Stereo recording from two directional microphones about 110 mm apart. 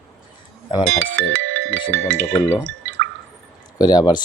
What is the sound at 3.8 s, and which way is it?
Speech, 40° left (ahead or behind).